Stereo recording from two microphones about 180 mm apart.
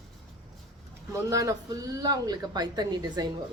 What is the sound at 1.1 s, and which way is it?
Speech, 20° right (ahead or behind).